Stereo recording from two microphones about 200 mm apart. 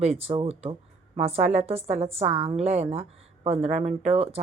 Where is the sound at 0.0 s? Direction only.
30° right (ahead or behind).